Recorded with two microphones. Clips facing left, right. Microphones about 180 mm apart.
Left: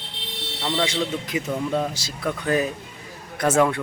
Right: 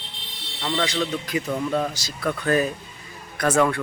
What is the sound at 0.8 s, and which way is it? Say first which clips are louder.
Speech: even; 25° left (ahead or behind).